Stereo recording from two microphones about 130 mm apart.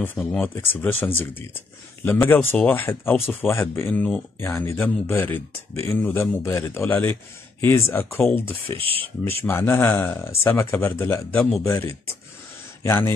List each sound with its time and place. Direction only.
0.0 s speech: 10° left (ahead or behind)
8.7 s speech: 45° right (ahead or behind)
9.5 s speech: 15° left (ahead or behind)